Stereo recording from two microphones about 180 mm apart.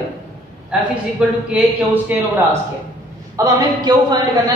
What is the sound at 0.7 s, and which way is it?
A man's voice, 5° right (ahead or behind).